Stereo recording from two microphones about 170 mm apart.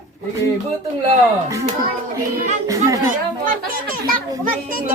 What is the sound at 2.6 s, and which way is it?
Speech, 20° right (ahead or behind).